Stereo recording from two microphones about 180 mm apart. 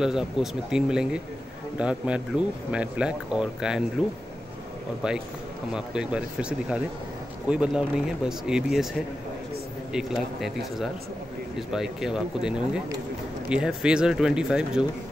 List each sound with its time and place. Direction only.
0.0 s speech: 5° right (ahead or behind)
5.0 s speech: 5° right (ahead or behind)
7.4 s speech: 5° right (ahead or behind)